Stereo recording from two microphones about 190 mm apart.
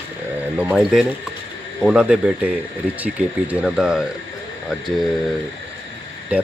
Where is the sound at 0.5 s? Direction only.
5° right (ahead or behind).